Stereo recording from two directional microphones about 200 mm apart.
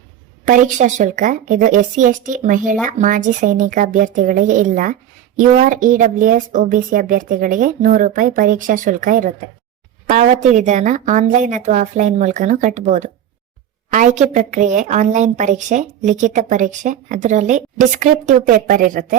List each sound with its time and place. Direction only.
0.4 s a woman's voice: 40° right (ahead or behind)